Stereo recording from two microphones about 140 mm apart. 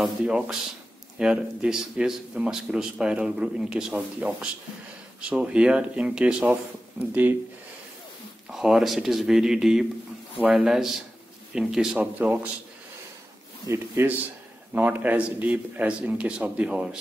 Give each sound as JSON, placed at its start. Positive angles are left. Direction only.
{"t": 0.0, "sound": "speech", "side_deg": -5}
{"t": 8.5, "sound": "speech", "side_deg": -5}
{"t": 13.7, "sound": "speech", "side_deg": -20}